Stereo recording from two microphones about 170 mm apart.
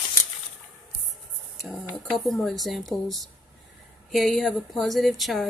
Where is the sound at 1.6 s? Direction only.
Centre (ahead or behind).